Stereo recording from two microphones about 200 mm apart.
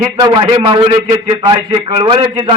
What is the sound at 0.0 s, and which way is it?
A man's voice, 20° right (ahead or behind).